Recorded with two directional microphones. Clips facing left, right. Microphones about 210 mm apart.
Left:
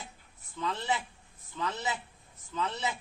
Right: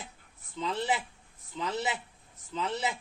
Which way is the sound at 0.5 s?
20° right (ahead or behind).